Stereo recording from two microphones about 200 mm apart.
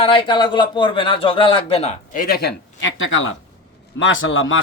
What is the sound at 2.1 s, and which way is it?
A man's voice, 50° left (ahead or behind).